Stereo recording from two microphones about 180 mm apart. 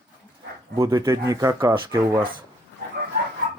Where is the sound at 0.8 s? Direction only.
20° right (ahead or behind).